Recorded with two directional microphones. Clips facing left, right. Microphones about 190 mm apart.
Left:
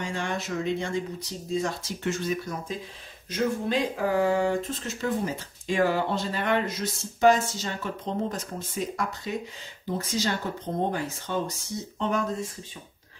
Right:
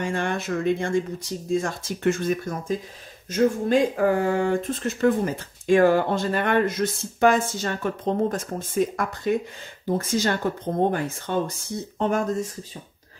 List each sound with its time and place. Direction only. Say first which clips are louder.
0.0 s speech: right 5 dB; 55° right (ahead or behind)